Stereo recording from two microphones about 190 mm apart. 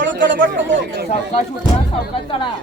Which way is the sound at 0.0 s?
75° right (ahead or behind).